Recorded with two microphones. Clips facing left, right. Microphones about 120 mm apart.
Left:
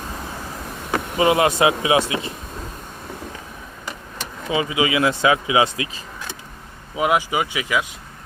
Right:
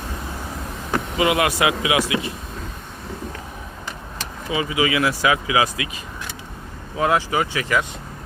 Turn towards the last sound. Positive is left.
turn(degrees=10)  # may be behind; listen again after turning